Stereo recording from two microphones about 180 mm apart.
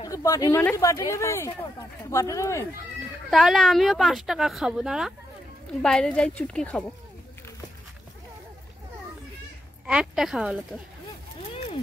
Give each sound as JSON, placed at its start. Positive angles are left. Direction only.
{"t": 0.0, "sound": "speech", "side_deg": 20}
{"t": 3.3, "sound": "speech", "side_deg": 0}
{"t": 9.8, "sound": "speech", "side_deg": -5}